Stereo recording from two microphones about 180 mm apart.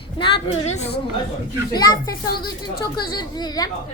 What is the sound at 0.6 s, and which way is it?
Speech, 35° left (ahead or behind).